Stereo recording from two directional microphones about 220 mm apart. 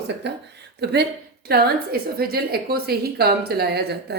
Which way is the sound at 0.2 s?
50° right (ahead or behind).